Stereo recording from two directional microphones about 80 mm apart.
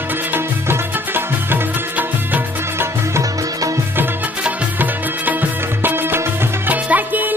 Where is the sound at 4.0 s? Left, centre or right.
Right.